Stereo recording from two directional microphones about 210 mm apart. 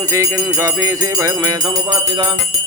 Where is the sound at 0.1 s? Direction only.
15° right (ahead or behind).